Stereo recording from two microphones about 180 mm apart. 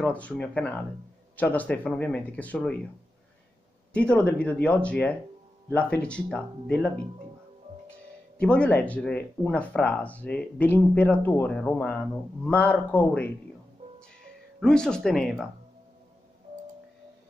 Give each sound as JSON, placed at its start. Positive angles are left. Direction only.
{"t": 0.0, "sound": "speech", "side_deg": 10}
{"t": 3.9, "sound": "speech", "side_deg": 5}
{"t": 8.4, "sound": "speech", "side_deg": 5}
{"t": 14.6, "sound": "speech", "side_deg": 5}